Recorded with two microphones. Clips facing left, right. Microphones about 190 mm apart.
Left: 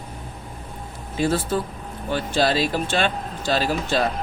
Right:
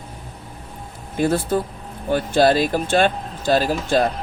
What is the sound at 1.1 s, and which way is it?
Speech, 55° right (ahead or behind).